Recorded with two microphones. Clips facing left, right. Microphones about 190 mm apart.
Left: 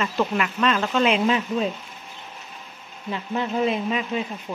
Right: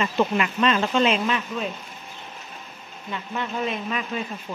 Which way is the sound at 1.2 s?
30° left (ahead or behind).